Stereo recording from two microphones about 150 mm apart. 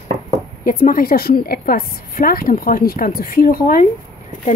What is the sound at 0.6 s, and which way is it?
A woman's voice, 70° left (ahead or behind).